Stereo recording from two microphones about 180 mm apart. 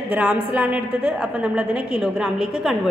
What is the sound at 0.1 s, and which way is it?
A woman's voice, 10° right (ahead or behind).